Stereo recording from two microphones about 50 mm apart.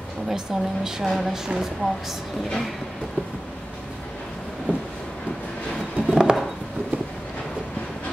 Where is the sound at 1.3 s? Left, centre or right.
Centre.